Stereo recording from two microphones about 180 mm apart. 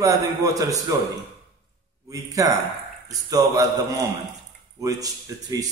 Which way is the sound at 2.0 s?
20° right (ahead or behind).